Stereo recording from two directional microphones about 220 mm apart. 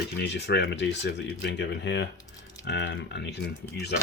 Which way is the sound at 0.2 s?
50° left (ahead or behind).